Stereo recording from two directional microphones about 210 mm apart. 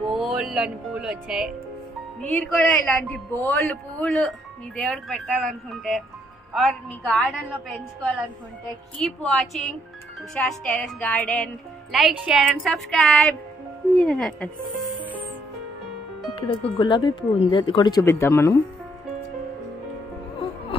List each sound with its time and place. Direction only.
0.2 s speech: 5° right (ahead or behind)
2.2 s speech: 5° left (ahead or behind)
9.3 s speech: centre (ahead or behind)
15.0 s music: 10° right (ahead or behind)
16.3 s speech: 25° left (ahead or behind)